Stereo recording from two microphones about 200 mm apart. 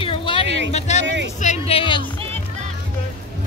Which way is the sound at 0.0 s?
25° left (ahead or behind).